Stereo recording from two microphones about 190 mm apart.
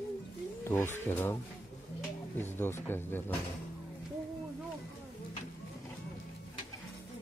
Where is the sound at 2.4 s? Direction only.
10° left (ahead or behind).